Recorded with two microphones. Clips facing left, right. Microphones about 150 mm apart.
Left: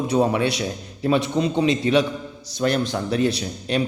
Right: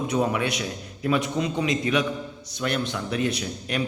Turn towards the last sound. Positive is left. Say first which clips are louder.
# left 4 dB
turn(degrees=30)  # may be behind; listen again after turning